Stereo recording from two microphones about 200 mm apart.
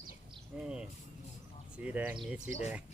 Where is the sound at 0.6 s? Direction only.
5° right (ahead or behind).